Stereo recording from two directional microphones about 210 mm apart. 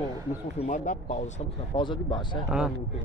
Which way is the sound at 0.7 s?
35° left (ahead or behind).